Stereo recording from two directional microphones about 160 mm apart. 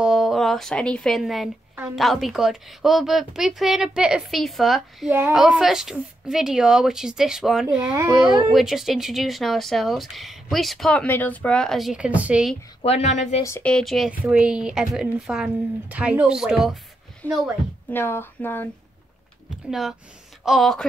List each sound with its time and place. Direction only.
0.0 s speech: centre (ahead or behind)
12.8 s a woman's voice: 45° left (ahead or behind)
13.4 s speech: 15° left (ahead or behind)
13.7 s speech: 5° left (ahead or behind)
17.2 s speech: 10° left (ahead or behind)
19.7 s speech: centre (ahead or behind)